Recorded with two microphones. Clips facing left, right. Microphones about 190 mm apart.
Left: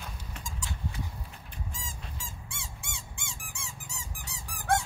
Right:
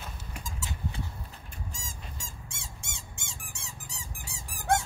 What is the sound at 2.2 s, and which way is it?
Squeak, 40° right (ahead or behind).